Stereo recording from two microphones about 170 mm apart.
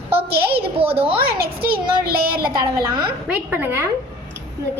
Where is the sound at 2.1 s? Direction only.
60° right (ahead or behind).